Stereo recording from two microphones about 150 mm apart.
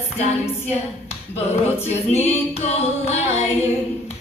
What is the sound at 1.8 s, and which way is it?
A capella, 45° left (ahead or behind).